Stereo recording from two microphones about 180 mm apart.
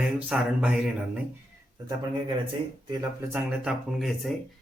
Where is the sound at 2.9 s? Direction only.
20° right (ahead or behind).